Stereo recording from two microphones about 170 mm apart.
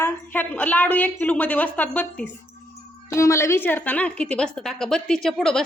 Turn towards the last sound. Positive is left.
turn(degrees=0)  # may be behind; listen again after turning